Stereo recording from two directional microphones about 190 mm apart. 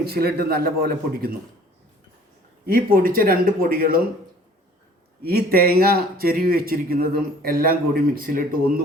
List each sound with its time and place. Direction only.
0.0 s a man's voice: 55° right (ahead or behind)
2.6 s speech: 50° right (ahead or behind)
5.2 s speech: 55° right (ahead or behind)